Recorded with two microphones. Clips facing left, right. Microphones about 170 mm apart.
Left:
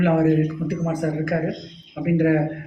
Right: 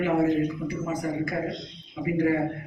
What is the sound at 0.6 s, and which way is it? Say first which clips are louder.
A man's voice: left 5 dB; 75° left (ahead or behind).